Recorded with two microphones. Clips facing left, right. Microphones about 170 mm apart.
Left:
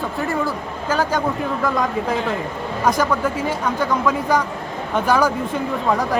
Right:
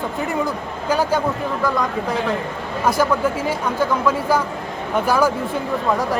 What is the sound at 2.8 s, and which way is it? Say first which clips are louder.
Speech: right 1 dB; 10° right (ahead or behind).